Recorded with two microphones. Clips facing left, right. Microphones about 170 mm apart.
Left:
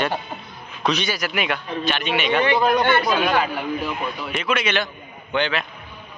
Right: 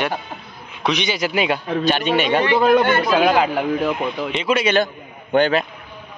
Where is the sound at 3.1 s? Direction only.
90° right.